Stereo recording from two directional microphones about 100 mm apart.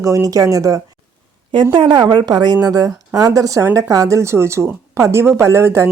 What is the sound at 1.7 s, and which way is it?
A woman's voice, 50° right (ahead or behind).